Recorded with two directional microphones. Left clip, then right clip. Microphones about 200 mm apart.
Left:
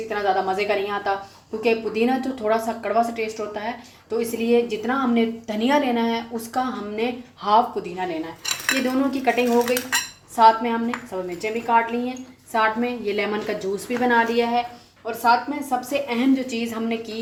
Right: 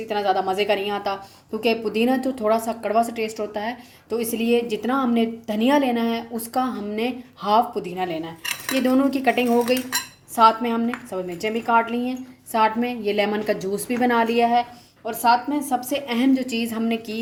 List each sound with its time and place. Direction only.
0.1 s a woman's voice: 40° right (ahead or behind)